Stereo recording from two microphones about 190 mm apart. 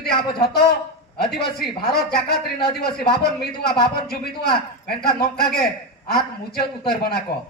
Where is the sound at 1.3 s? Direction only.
55° left (ahead or behind).